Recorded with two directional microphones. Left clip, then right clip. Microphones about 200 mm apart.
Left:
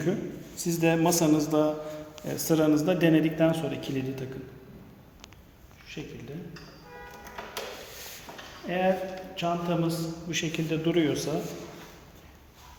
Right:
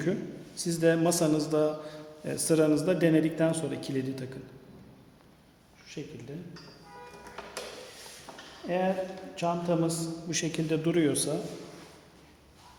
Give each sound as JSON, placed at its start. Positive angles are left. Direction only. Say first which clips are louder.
{"t": 0.0, "sound": "a man's voice", "louder": "left 2 dB", "side_deg": -20}
{"t": 6.0, "sound": "a man's voice", "louder": "even", "side_deg": -40}
{"t": 8.6, "sound": "a man's voice", "louder": "left 2 dB", "side_deg": -30}